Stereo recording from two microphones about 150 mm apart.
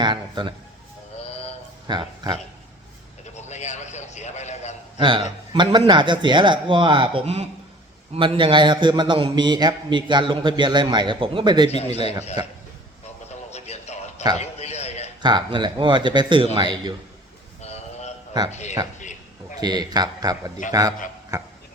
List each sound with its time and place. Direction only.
0.0 s a man's voice: 30° right (ahead or behind)
1.3 s music: 40° left (ahead or behind)
1.9 s a man's voice: 30° right (ahead or behind)
3.3 s a sound: 50° left (ahead or behind)
4.9 s a man's voice: 30° right (ahead or behind)
11.7 s a man's voice: 45° left (ahead or behind)
13.5 s a sound: 45° left (ahead or behind)
15.2 s a man's voice: 30° right (ahead or behind)
17.6 s a sound: 45° left (ahead or behind)
19.5 s a man's voice: 25° right (ahead or behind)
20.6 s a man's voice: 60° left (ahead or behind)